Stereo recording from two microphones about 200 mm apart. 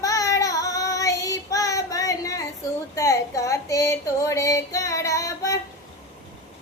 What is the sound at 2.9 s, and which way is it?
Female singing, 15° left (ahead or behind).